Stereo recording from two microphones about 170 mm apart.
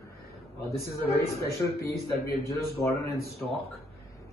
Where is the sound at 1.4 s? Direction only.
15° left (ahead or behind).